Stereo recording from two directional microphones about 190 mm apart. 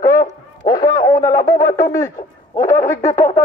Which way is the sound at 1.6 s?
15° left (ahead or behind).